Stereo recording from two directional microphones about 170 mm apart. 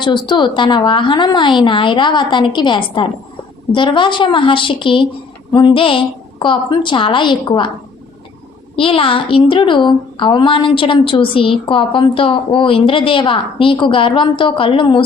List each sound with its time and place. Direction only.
0.0 s a woman's voice: 25° left (ahead or behind)
8.7 s a child's voice: 30° left (ahead or behind)